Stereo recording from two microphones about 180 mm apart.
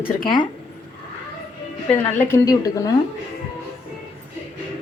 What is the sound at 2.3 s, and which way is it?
Speech, 15° left (ahead or behind).